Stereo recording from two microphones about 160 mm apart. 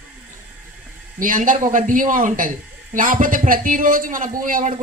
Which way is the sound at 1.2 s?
60° right (ahead or behind).